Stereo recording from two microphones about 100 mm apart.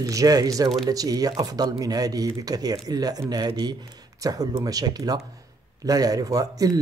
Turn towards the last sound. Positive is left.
turn(degrees=-40)  # may be behind; listen again after turning